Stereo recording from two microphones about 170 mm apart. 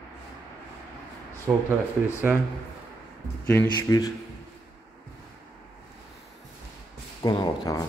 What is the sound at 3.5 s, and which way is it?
Speech, 20° left (ahead or behind).